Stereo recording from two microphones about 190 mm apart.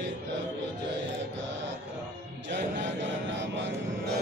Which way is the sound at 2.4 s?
70° right (ahead or behind).